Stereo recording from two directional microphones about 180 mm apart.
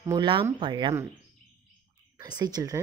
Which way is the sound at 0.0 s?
20° right (ahead or behind).